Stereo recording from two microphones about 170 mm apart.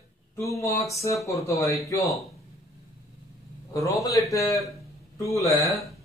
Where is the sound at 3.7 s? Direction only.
20° left (ahead or behind).